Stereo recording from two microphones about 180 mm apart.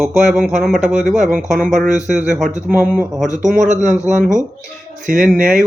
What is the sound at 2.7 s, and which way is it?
Speech, 10° right (ahead or behind).